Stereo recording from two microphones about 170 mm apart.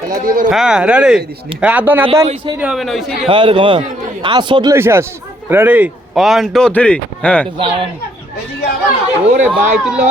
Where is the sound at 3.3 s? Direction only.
30° right (ahead or behind).